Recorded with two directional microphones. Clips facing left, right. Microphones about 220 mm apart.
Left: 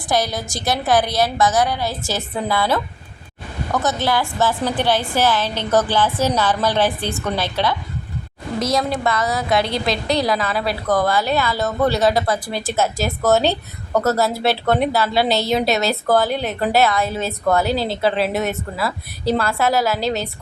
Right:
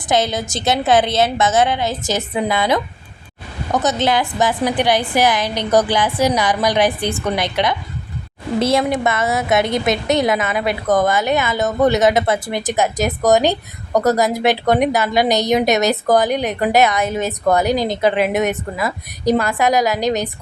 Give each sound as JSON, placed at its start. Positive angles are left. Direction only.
{"t": 0.1, "sound": "a woman's voice", "side_deg": -20}
{"t": 8.5, "sound": "a woman's voice", "side_deg": -30}